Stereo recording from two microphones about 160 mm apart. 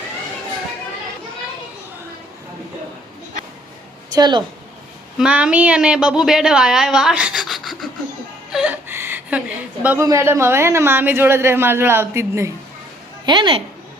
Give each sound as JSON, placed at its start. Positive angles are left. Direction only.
{"t": 4.1, "sound": "a woman's voice", "side_deg": -25}
{"t": 5.1, "sound": "a woman's voice", "side_deg": -5}
{"t": 8.5, "sound": "a sound", "side_deg": -10}
{"t": 9.8, "sound": "speech", "side_deg": -15}
{"t": 13.2, "sound": "a woman's voice", "side_deg": -30}